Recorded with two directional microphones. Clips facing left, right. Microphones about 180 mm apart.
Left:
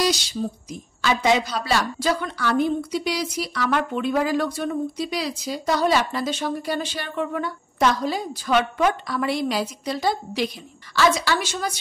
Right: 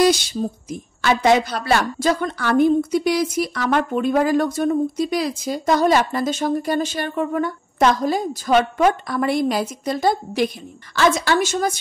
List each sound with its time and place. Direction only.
0.4 s a woman's voice: 55° right (ahead or behind)